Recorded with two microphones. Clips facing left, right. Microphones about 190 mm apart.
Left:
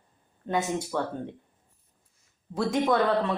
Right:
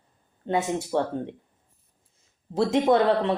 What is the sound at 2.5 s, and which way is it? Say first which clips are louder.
Speech: right 4 dB; 25° right (ahead or behind).